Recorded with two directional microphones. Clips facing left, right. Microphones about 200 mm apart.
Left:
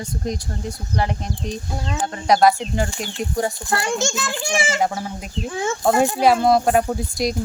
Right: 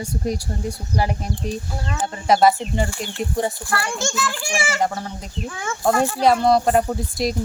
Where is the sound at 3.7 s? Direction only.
20° left (ahead or behind).